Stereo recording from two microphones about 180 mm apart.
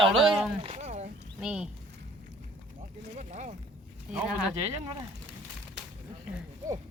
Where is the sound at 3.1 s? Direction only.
40° right (ahead or behind).